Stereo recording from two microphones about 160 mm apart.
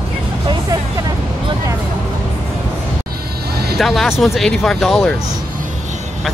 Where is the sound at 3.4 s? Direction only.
80° right.